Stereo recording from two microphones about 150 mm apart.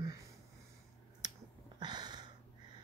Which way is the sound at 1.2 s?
25° right (ahead or behind).